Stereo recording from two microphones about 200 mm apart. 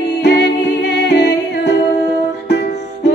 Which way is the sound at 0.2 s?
55° left (ahead or behind).